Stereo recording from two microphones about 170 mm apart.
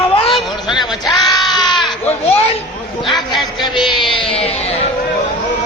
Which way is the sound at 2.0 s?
40° left (ahead or behind).